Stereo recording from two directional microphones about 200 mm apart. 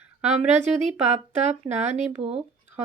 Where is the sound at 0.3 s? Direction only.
35° right (ahead or behind).